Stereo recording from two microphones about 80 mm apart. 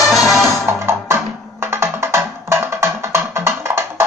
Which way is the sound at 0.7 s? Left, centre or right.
Right.